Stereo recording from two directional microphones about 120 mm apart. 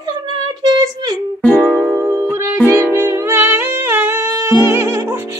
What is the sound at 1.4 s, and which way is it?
Music, 10° left (ahead or behind).